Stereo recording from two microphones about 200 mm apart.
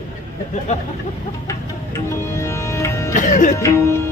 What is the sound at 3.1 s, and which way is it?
Music, 40° left (ahead or behind).